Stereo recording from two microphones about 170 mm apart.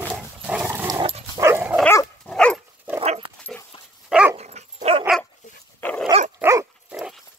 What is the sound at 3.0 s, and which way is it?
Dog, 35° right (ahead or behind).